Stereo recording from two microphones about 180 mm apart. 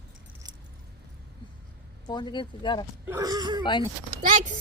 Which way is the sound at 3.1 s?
20° right (ahead or behind).